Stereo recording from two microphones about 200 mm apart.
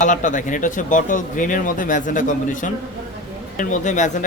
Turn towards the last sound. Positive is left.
turn(degrees=35)  # may be behind; listen again after turning